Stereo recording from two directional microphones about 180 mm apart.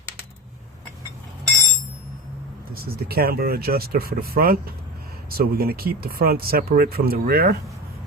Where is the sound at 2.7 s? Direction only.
60° right (ahead or behind).